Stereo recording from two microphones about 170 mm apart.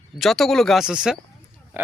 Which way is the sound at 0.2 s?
Centre (ahead or behind).